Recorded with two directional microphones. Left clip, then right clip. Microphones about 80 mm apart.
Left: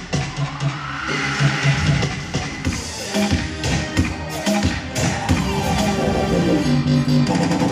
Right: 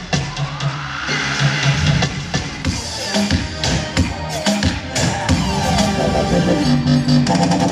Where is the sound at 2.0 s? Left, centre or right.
Right.